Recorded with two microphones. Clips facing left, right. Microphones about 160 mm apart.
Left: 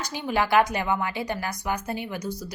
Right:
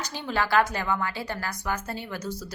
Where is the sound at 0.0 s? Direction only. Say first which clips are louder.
Left 3 dB; 15° left (ahead or behind).